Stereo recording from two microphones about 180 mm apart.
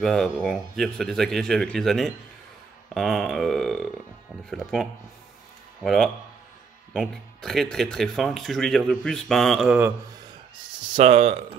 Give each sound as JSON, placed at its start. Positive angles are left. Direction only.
{"t": 0.0, "sound": "speech", "side_deg": 0}
{"t": 9.8, "sound": "a man's voice", "side_deg": -10}
{"t": 11.0, "sound": "speech", "side_deg": -35}